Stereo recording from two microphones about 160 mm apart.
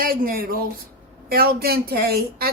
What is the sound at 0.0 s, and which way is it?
Speech, 65° right (ahead or behind).